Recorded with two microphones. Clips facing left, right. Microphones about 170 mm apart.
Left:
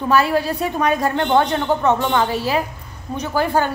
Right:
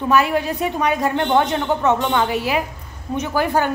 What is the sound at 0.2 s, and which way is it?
A woman's voice, 15° right (ahead or behind).